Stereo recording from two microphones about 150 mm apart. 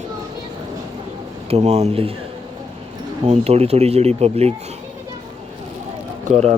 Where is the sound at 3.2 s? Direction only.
45° right (ahead or behind).